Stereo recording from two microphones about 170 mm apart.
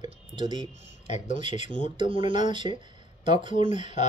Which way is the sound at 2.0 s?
30° right (ahead or behind).